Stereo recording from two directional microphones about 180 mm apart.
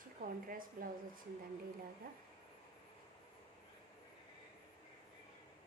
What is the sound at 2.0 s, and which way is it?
Speech, 55° right (ahead or behind).